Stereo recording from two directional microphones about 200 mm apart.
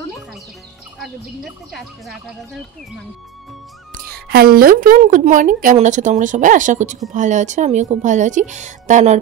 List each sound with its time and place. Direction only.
1.0 s speech: centre (ahead or behind)
3.9 s speech: 50° right (ahead or behind)